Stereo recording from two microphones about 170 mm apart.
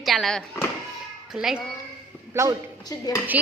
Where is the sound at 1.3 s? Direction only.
Centre (ahead or behind).